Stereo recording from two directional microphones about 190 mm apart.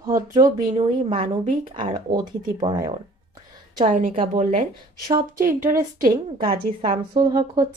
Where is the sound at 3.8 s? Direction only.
45° right (ahead or behind).